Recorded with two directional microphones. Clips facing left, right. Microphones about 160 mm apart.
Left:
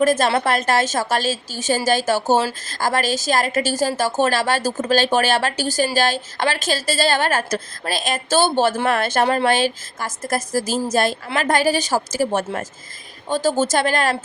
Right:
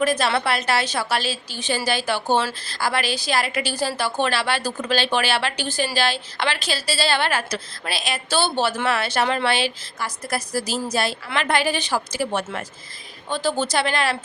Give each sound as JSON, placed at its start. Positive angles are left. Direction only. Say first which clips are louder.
{"t": 0.0, "sound": "a woman's voice", "louder": "left 4 dB", "side_deg": 45}